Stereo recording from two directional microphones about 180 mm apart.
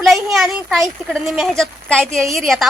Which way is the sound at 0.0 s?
Centre (ahead or behind).